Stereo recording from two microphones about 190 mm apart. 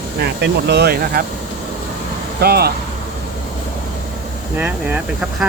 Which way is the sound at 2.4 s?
55° right (ahead or behind).